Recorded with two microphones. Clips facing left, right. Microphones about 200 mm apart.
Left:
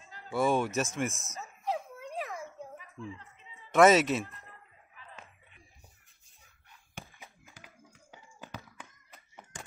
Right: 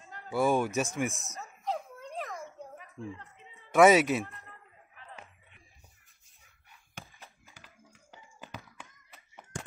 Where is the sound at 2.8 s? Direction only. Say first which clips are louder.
Right 2 dB; 55° right (ahead or behind).